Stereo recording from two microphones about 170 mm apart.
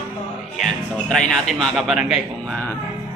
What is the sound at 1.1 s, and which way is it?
A man's voice, 5° left (ahead or behind).